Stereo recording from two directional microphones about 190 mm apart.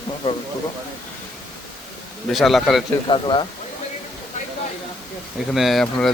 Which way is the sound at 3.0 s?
25° left (ahead or behind).